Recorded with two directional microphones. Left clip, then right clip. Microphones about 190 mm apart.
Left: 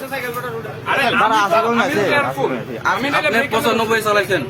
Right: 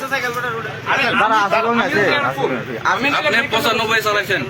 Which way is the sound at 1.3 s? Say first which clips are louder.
Even; 10° right (ahead or behind).